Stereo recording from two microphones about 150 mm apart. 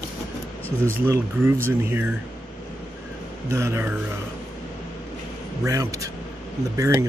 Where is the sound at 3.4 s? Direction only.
20° right (ahead or behind).